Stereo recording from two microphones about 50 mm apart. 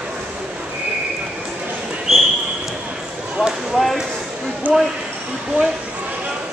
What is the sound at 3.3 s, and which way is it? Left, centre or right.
Speech, centre.